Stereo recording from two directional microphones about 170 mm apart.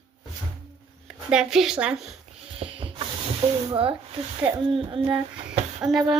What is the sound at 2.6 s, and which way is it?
Rub, 30° right (ahead or behind).